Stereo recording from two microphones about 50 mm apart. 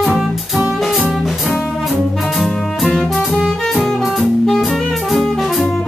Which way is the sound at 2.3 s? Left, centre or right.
Centre.